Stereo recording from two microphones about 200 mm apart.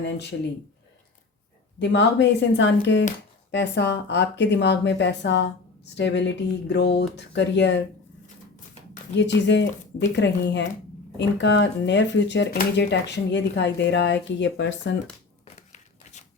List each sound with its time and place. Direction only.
0.0 s speech: 60° left (ahead or behind)
1.8 s speech: 60° left (ahead or behind)
9.1 s speech: 60° left (ahead or behind)
15.5 s a sound: 35° left (ahead or behind)